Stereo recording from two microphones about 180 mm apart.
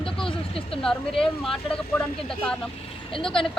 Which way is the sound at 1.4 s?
5° left (ahead or behind).